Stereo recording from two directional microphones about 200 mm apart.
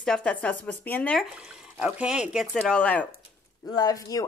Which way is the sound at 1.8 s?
5° right (ahead or behind).